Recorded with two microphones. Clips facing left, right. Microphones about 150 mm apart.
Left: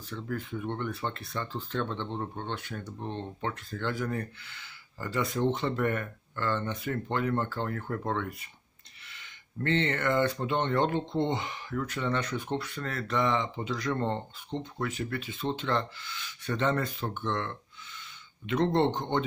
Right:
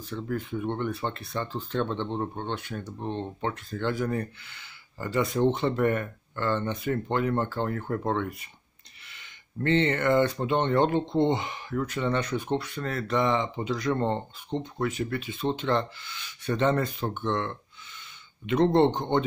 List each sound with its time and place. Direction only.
0.1 s speech: 25° right (ahead or behind)
9.6 s speech: 20° right (ahead or behind)